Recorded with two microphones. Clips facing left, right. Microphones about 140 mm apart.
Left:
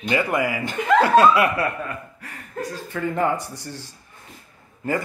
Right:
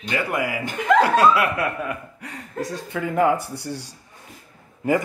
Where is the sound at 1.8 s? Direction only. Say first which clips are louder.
Right 3 dB; 15° right (ahead or behind).